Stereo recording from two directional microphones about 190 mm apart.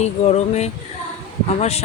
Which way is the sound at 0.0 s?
35° left (ahead or behind).